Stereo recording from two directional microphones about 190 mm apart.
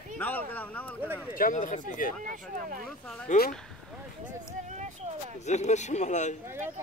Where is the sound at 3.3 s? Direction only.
40° left (ahead or behind).